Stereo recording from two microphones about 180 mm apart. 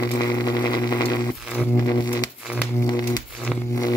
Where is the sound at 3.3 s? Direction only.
5° right (ahead or behind).